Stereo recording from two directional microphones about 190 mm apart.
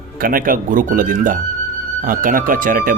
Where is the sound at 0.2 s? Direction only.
45° right (ahead or behind).